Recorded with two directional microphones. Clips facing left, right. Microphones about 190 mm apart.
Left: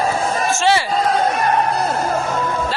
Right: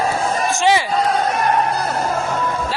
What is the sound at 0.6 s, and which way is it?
Speech, 15° right (ahead or behind).